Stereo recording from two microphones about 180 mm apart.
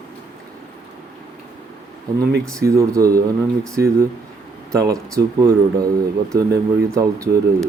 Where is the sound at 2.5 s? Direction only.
15° right (ahead or behind).